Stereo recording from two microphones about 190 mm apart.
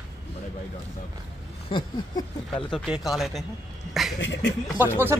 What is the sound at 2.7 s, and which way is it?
Speech, centre (ahead or behind).